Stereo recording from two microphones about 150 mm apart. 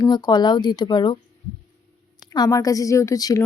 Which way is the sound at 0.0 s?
25° left (ahead or behind).